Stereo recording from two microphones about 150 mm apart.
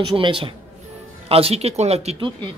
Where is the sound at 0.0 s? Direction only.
35° right (ahead or behind).